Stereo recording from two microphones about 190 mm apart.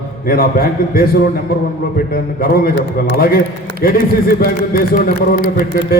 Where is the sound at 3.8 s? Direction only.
50° left (ahead or behind).